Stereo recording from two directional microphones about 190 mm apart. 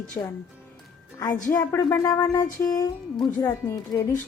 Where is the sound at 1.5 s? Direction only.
10° left (ahead or behind).